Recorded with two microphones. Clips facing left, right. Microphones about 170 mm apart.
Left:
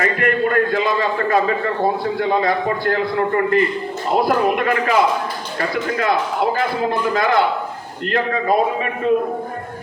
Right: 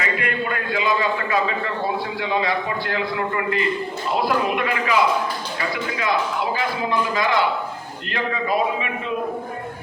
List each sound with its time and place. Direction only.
0.0 s a man's voice: 50° left (ahead or behind)